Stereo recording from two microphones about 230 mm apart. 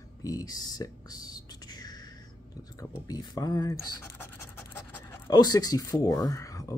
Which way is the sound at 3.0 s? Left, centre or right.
Centre.